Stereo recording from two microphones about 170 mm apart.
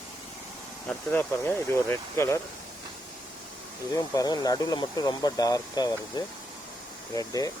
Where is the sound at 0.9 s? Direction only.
10° left (ahead or behind).